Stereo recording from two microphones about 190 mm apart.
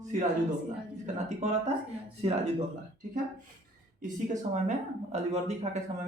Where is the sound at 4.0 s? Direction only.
40° right (ahead or behind).